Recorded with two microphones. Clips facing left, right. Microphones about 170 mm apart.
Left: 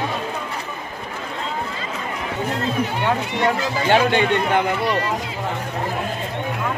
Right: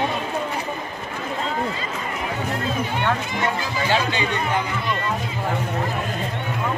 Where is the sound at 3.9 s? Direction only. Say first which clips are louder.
Left 7 dB; 60° left (ahead or behind).